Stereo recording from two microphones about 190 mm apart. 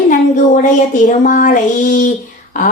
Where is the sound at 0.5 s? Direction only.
40° left (ahead or behind).